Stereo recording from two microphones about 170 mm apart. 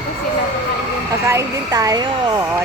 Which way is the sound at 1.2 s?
20° right (ahead or behind).